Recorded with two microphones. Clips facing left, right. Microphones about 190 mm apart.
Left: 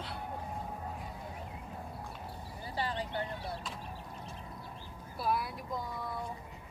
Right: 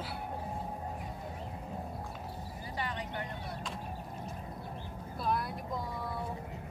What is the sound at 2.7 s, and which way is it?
Vehicle, 30° left (ahead or behind).